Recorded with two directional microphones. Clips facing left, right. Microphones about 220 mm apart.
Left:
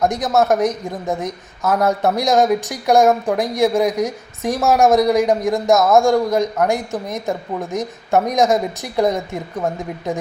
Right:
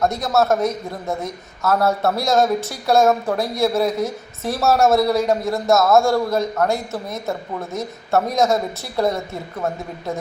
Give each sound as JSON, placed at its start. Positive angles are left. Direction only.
{"t": 0.0, "sound": "a man's voice", "side_deg": 15}